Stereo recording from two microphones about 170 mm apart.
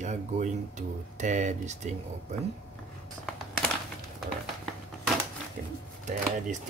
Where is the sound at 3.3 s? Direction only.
5° left (ahead or behind).